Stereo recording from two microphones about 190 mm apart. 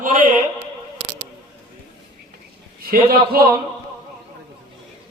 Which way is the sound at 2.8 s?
50° right (ahead or behind).